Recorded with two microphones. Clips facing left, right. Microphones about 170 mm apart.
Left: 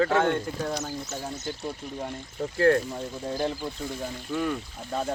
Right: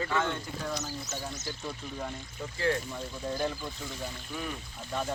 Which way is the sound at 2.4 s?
60° left (ahead or behind).